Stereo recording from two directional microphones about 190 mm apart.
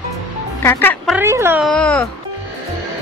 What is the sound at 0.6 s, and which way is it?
Speech, 10° left (ahead or behind).